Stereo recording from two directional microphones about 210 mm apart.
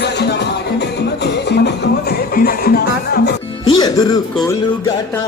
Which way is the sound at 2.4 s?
45° left (ahead or behind).